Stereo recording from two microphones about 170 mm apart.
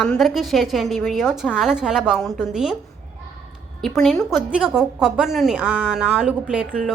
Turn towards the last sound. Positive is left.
turn(degrees=-5)  # may be behind; listen again after turning